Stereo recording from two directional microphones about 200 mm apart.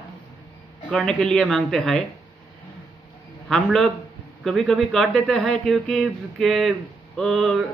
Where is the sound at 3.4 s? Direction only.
5° left (ahead or behind).